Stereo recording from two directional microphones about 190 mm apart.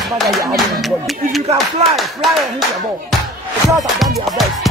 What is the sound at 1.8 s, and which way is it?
Speech, 35° right (ahead or behind).